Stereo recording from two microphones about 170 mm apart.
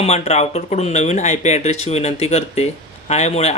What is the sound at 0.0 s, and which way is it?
Speech, 40° left (ahead or behind).